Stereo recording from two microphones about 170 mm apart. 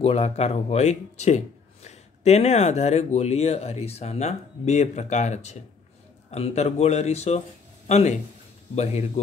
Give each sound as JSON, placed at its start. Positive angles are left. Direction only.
{"t": 0.0, "sound": "speech", "side_deg": 40}